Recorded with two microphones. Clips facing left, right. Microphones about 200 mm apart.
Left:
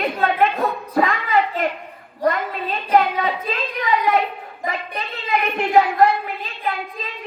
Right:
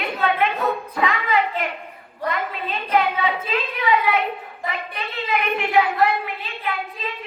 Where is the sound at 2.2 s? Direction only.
35° left (ahead or behind).